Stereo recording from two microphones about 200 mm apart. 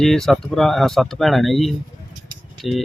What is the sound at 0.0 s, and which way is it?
Speech, centre (ahead or behind).